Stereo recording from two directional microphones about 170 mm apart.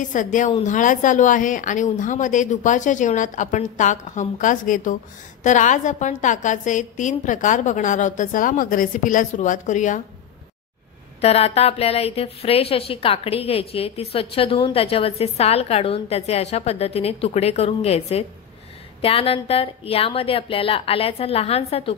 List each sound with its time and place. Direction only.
0.1 s a woman's voice: 50° left (ahead or behind)
11.1 s a woman's voice: 35° left (ahead or behind)